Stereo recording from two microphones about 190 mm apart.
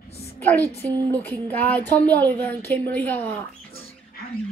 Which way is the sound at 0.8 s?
15° right (ahead or behind).